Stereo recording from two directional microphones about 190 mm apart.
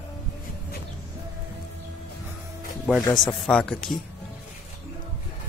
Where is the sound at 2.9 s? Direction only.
5° right (ahead or behind).